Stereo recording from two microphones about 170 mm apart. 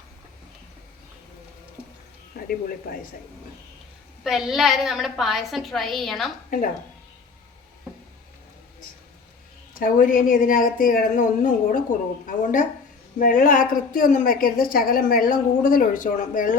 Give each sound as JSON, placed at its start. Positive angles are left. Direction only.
{"t": 2.5, "sound": "a woman's voice", "side_deg": 60}
{"t": 4.2, "sound": "a woman's voice", "side_deg": 0}
{"t": 9.7, "sound": "a woman's voice", "side_deg": 55}